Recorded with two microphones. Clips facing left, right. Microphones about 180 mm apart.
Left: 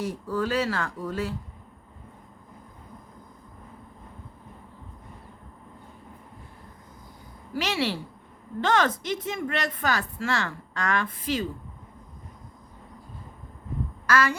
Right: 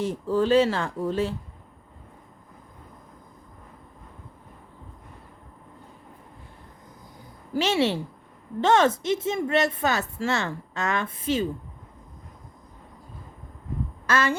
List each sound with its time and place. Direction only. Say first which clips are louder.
0.0 s speech: right 4 dB; 25° right (ahead or behind)
7.5 s speech: right 5 dB; 25° right (ahead or behind)
14.1 s speech: even; 25° right (ahead or behind)